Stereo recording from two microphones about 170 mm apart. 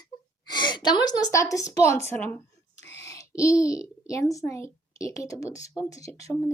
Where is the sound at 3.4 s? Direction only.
20° left (ahead or behind).